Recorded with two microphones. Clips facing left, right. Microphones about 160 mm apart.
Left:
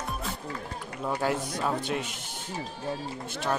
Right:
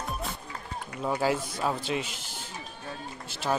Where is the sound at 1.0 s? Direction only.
5° right (ahead or behind).